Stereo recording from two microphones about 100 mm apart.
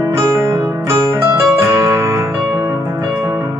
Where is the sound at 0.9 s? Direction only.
30° right (ahead or behind).